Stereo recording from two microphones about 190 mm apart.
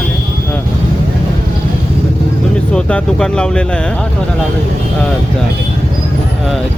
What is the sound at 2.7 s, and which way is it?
Speech, 5° left (ahead or behind).